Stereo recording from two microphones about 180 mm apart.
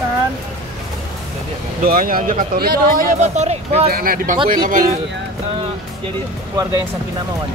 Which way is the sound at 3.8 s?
55° right (ahead or behind).